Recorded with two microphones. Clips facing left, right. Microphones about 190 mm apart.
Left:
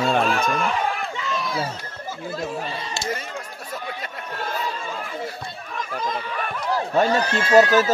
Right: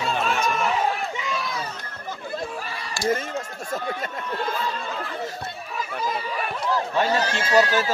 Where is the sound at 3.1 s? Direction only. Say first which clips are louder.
Right 4 dB; 50° right (ahead or behind).